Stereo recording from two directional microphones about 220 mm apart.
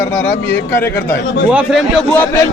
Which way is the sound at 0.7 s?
10° left (ahead or behind).